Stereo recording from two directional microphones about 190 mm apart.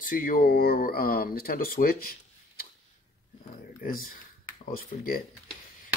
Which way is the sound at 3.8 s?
50° left (ahead or behind).